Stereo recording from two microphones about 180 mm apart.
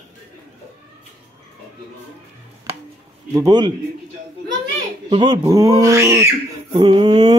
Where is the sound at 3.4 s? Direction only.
25° right (ahead or behind).